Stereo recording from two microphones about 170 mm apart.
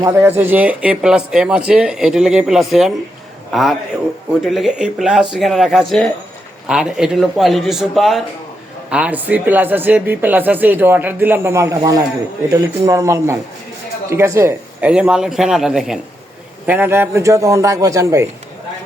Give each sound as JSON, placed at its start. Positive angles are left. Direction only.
{"t": 0.0, "sound": "speech", "side_deg": -15}